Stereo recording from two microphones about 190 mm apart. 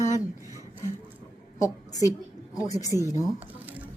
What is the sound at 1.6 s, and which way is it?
A woman's voice, 20° left (ahead or behind).